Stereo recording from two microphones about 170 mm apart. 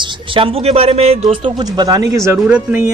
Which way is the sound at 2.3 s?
10° right (ahead or behind).